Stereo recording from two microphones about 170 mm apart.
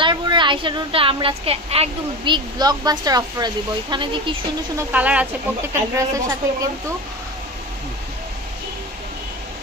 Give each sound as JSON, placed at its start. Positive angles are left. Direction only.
{"t": 0.0, "sound": "a woman's voice", "side_deg": -25}
{"t": 4.7, "sound": "a woman's voice", "side_deg": -10}